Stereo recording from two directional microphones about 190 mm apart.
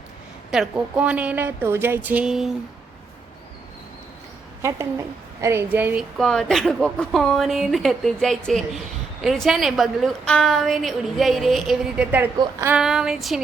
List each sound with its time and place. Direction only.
0.5 s a woman's voice: 5° right (ahead or behind)
4.6 s a woman's voice: 15° right (ahead or behind)
6.1 s a woman's voice: centre (ahead or behind); by 12.7 s 15° right (ahead or behind)
12.7 s a woman's voice: 5° right (ahead or behind)